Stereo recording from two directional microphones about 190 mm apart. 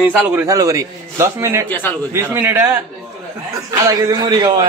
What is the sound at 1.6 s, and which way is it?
Speech, 10° left (ahead or behind).